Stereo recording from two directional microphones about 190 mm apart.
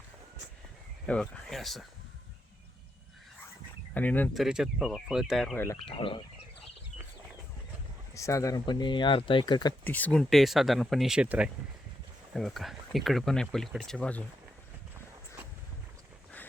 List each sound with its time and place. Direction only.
1.0 s speech: 5° left (ahead or behind)
3.9 s speech: 10° left (ahead or behind)
4.4 s speech: 5° right (ahead or behind)
5.9 s speech: 30° left (ahead or behind)
8.1 s speech: 15° left (ahead or behind)
9.8 s speech: 10° left (ahead or behind)